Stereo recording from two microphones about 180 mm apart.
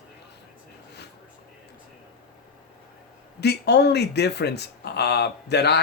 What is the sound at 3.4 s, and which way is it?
Speech, 65° left (ahead or behind).